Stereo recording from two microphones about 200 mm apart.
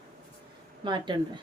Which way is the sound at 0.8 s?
20° right (ahead or behind).